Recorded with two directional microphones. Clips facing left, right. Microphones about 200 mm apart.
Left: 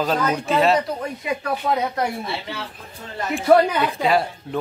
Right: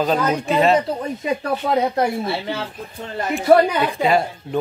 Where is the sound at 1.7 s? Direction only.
30° right (ahead or behind).